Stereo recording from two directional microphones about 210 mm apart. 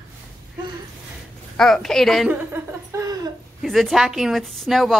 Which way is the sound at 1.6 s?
Centre (ahead or behind).